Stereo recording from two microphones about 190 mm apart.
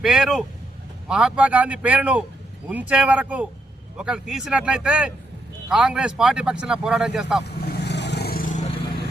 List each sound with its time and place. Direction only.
0.0 s speech: centre (ahead or behind)
7.4 s vehicle: 60° left (ahead or behind)